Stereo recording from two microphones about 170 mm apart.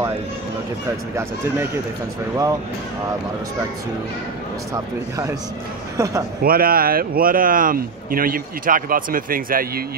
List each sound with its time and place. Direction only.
4.7 s a man's voice: 20° right (ahead or behind)
6.4 s speech: 60° right (ahead or behind)